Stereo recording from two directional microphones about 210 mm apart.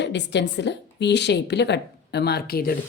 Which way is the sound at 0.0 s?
55° left (ahead or behind).